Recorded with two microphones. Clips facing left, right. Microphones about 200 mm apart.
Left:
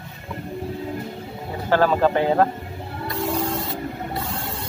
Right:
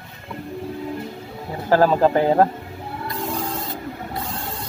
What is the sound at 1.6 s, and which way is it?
Speech, 35° right (ahead or behind).